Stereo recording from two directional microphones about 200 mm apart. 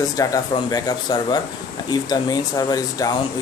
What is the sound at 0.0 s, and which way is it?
Speech, 15° left (ahead or behind).